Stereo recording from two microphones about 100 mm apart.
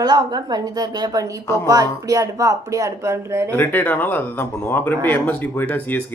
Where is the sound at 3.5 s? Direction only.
20° left (ahead or behind).